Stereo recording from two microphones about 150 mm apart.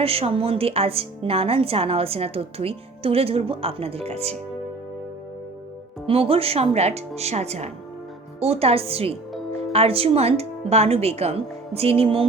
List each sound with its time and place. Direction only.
0.0 s a woman's voice: 40° right (ahead or behind)
6.1 s a woman's voice: 40° right (ahead or behind)